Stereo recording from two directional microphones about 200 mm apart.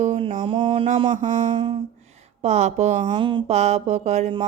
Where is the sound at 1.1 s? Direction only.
40° right (ahead or behind).